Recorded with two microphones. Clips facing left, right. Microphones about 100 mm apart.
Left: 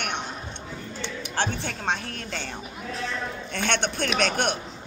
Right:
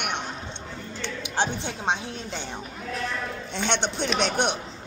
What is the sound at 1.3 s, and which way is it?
Speech, 15° right (ahead or behind).